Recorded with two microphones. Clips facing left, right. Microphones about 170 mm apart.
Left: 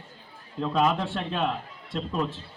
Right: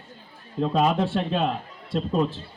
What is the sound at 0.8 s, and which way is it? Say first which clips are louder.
Speech: right 4 dB; 35° right (ahead or behind).